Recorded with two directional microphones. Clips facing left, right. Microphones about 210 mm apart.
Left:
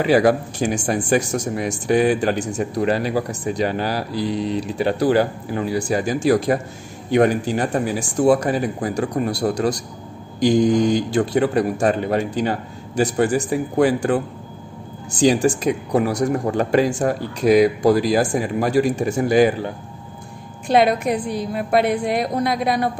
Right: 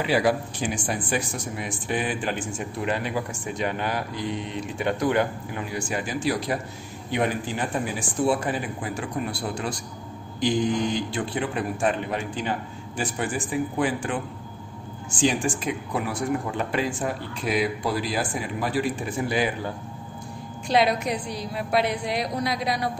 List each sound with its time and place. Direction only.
0.0 s speech: 45° left (ahead or behind)
20.6 s speech: 55° left (ahead or behind)